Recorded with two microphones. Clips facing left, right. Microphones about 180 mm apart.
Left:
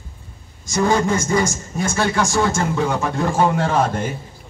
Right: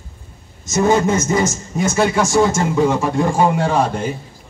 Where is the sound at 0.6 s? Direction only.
20° right (ahead or behind).